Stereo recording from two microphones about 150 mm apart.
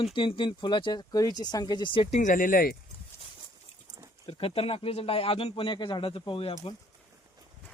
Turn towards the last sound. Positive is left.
turn(degrees=35)  # may be behind; listen again after turning